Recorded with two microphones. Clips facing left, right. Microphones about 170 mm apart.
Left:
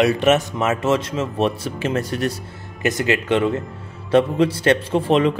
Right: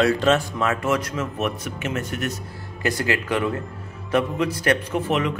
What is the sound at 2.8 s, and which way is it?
Speech, 20° left (ahead or behind).